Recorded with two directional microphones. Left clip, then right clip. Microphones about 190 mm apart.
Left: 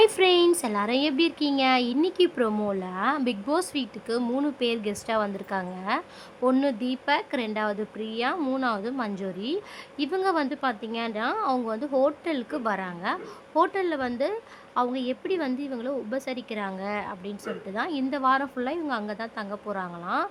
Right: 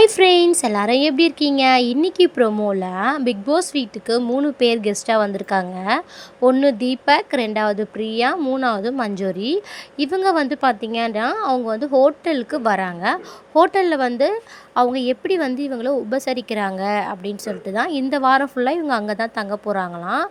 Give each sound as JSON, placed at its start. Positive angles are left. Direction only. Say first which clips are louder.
{"t": 0.0, "sound": "a woman's voice", "louder": "right 7 dB", "side_deg": -25}
{"t": 8.4, "sound": "speech", "louder": "right 7 dB", "side_deg": -15}
{"t": 8.6, "sound": "a woman's voice", "louder": "right 8 dB", "side_deg": -25}